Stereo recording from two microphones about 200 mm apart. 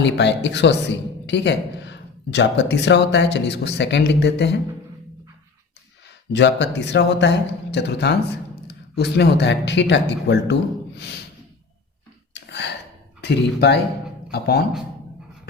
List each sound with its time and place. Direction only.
0.0 s speech: 60° left (ahead or behind)
6.3 s speech: 60° left (ahead or behind)
12.3 s a sound: 60° left (ahead or behind)
13.2 s speech: 55° left (ahead or behind)